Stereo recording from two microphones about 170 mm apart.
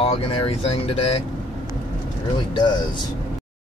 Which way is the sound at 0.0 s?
35° left (ahead or behind).